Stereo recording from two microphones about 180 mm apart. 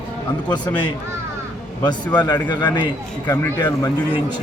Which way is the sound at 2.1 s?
25° left (ahead or behind).